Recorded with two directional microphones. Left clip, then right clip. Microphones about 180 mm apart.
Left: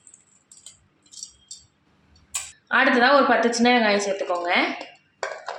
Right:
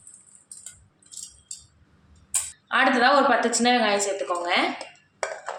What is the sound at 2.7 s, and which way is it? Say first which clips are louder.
Speech: left 2 dB; 30° left (ahead or behind).